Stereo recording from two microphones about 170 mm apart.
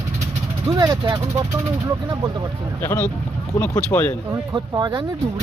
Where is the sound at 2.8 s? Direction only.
15° left (ahead or behind).